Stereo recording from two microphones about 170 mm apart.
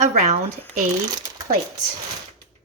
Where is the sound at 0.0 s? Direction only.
40° right (ahead or behind).